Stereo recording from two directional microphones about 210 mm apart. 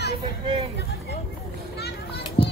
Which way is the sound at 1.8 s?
50° left (ahead or behind).